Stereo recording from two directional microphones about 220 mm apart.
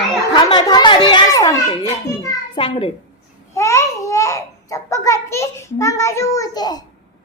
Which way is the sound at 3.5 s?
15° left (ahead or behind).